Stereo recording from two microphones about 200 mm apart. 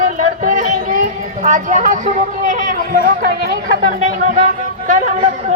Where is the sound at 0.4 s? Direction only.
40° right (ahead or behind).